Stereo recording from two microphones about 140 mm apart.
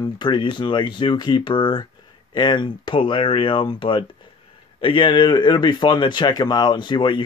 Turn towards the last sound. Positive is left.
turn(degrees=35)  # may be behind; listen again after turning